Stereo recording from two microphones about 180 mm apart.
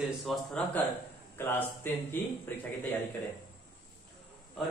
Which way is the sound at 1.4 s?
10° left (ahead or behind).